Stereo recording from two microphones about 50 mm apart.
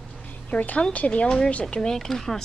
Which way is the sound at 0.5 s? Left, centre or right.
Left.